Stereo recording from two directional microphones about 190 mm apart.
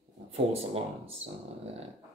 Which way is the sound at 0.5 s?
30° right (ahead or behind).